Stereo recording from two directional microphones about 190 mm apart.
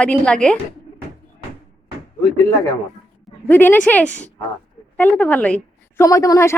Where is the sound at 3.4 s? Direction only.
10° left (ahead or behind).